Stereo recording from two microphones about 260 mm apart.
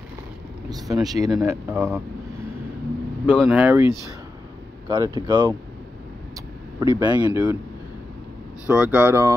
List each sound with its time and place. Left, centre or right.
0.7 s speech: centre
3.3 s speech: centre
6.8 s speech: centre
8.6 s speech: centre